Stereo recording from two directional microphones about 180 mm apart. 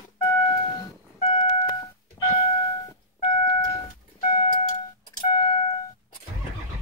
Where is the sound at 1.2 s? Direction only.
35° left (ahead or behind).